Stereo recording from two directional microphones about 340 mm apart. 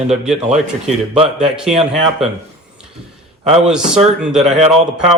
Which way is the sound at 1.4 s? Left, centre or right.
Centre.